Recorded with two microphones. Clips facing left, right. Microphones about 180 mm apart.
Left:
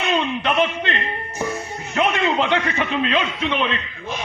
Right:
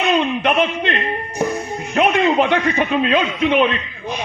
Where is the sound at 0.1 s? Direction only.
15° right (ahead or behind).